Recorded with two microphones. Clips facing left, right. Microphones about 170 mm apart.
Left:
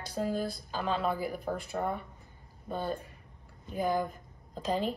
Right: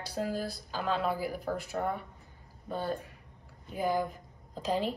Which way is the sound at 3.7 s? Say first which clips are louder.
Even; 5° right (ahead or behind).